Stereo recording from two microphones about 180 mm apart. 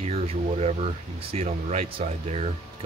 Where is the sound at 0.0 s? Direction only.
35° right (ahead or behind).